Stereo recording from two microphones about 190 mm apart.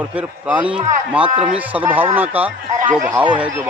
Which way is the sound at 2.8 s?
40° right (ahead or behind).